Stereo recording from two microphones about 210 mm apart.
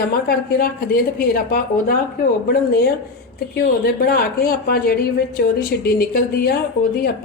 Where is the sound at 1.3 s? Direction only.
40° left (ahead or behind).